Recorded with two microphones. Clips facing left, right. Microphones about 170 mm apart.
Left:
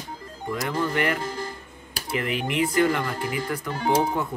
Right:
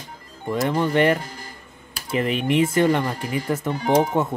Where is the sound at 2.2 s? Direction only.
25° right (ahead or behind).